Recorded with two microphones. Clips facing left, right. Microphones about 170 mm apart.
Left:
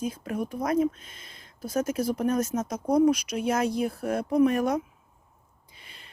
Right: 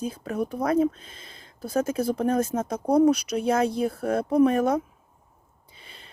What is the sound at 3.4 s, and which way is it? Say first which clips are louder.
Speech: right 2 dB; 30° right (ahead or behind).